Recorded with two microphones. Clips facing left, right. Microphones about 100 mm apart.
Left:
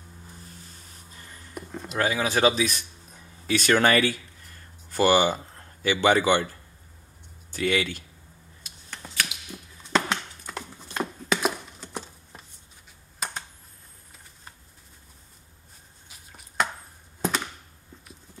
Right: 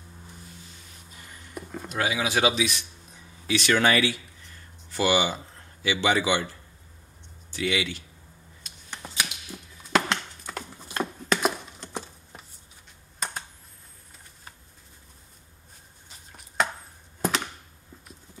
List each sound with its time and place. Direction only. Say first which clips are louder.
1.5 s speech: even; centre (ahead or behind)
2.0 s speech: left 2 dB; 45° left (ahead or behind)
7.5 s speech: left 2 dB; 45° left (ahead or behind)
9.3 s a sound: even; centre (ahead or behind)
12.0 s computer keyboard: even; 5° right (ahead or behind)
16.3 s chopping: even; centre (ahead or behind)
17.2 s a sound: even; 5° left (ahead or behind)